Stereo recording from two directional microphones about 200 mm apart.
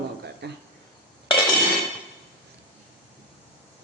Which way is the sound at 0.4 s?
55° right (ahead or behind).